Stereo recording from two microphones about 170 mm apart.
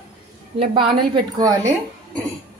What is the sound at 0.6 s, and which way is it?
Speech, 30° right (ahead or behind).